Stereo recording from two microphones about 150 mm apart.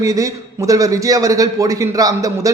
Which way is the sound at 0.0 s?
20° right (ahead or behind).